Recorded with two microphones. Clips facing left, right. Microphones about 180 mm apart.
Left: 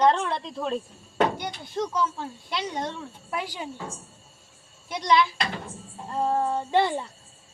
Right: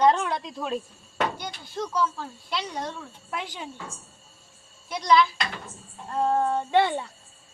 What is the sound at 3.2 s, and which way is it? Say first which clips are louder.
Speech: left 2 dB; 5° left (ahead or behind).